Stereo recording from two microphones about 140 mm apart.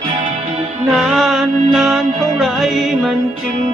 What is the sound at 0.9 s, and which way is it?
Music, 5° right (ahead or behind).